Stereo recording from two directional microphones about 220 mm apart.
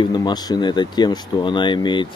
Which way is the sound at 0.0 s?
20° left (ahead or behind).